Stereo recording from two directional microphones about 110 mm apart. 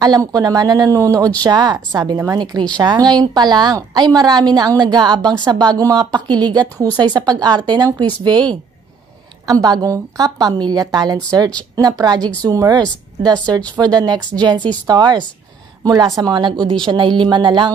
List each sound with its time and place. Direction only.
0.0 s a woman's voice: 35° right (ahead or behind)
12.2 s speech: 10° left (ahead or behind)
12.4 s a woman's voice: 35° right (ahead or behind)